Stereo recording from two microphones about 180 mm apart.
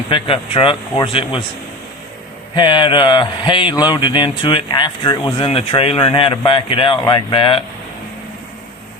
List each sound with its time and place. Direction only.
0.1 s speech: 30° left (ahead or behind)
2.6 s speech: 25° left (ahead or behind)